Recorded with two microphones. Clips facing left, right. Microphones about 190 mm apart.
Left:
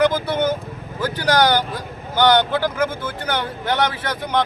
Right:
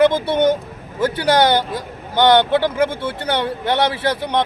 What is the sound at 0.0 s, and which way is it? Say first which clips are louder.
Speech: right 4 dB; 25° right (ahead or behind).